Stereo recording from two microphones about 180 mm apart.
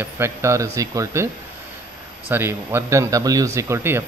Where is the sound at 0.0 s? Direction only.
15° right (ahead or behind).